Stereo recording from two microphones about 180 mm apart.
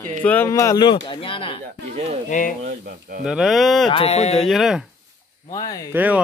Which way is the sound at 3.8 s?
30° left (ahead or behind).